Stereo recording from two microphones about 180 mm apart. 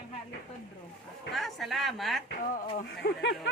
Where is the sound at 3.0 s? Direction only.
70° left (ahead or behind).